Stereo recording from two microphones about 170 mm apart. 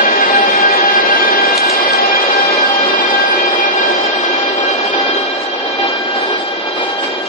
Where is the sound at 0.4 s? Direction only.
60° left (ahead or behind).